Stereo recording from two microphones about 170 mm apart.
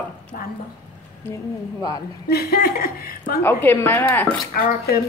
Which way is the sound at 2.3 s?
65° left (ahead or behind).